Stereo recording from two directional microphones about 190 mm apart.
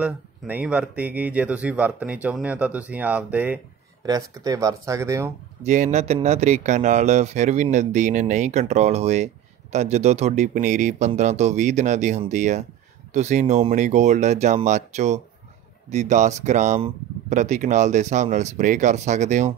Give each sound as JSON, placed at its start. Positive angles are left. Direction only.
{"t": 0.0, "sound": "speech", "side_deg": -5}
{"t": 5.6, "sound": "speech", "side_deg": -35}